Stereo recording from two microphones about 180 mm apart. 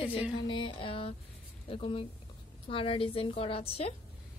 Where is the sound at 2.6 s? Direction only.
30° left (ahead or behind).